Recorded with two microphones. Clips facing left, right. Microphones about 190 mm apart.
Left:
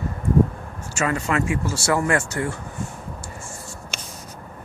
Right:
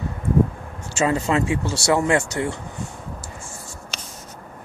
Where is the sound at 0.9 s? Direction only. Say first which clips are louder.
Right 3 dB; 25° right (ahead or behind).